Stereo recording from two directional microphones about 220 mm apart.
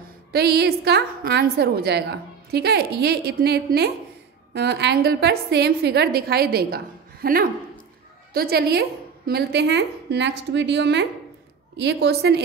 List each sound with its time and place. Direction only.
0.3 s a woman's voice: 45° right (ahead or behind)